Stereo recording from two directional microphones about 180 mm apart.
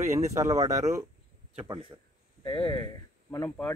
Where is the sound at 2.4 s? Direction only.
25° left (ahead or behind).